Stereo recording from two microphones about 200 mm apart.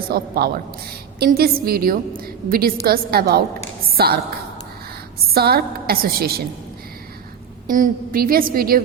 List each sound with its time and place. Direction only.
0.1 s a woman's voice: 50° right (ahead or behind)
5.3 s a woman's voice: 50° right (ahead or behind)
7.7 s a woman's voice: 45° right (ahead or behind)